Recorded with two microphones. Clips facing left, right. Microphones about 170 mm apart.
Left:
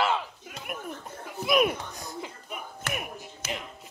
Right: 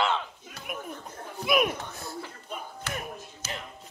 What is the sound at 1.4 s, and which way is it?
Speech, centre (ahead or behind).